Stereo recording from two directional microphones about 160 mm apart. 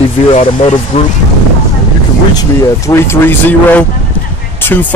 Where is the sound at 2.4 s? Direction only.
15° left (ahead or behind).